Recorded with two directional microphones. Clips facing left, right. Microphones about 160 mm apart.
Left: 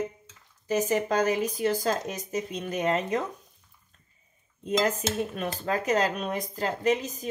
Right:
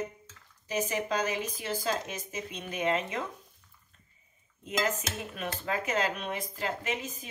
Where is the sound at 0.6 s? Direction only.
45° left (ahead or behind).